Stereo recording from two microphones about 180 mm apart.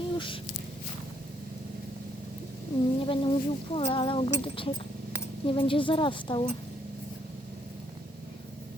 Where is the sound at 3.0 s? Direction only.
30° left (ahead or behind).